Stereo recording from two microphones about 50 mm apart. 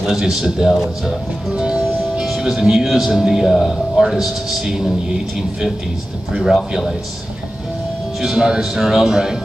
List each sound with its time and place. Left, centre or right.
0.0 s speech: centre
1.5 s music: centre
1.8 s speech: centre
8.2 s speech: centre